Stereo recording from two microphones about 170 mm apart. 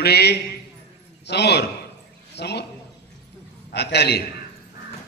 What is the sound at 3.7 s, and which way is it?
Speech, 75° left (ahead or behind).